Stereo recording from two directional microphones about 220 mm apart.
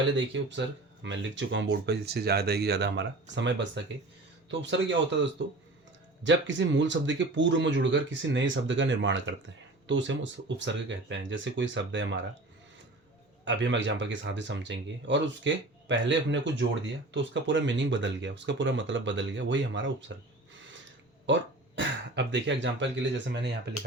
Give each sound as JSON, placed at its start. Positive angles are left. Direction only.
{"t": 0.2, "sound": "speech", "side_deg": -55}
{"t": 13.4, "sound": "speech", "side_deg": -55}
{"t": 21.3, "sound": "speech", "side_deg": -55}